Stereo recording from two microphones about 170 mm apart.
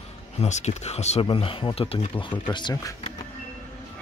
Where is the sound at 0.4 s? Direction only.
40° left (ahead or behind).